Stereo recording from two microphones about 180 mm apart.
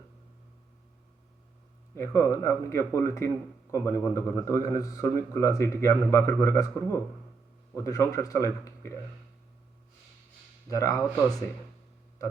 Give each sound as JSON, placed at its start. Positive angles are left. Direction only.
{"t": 2.0, "sound": "a man's voice", "side_deg": 15}
{"t": 10.7, "sound": "speech", "side_deg": 20}